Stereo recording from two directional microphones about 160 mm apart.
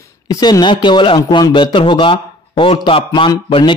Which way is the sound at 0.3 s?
25° left (ahead or behind).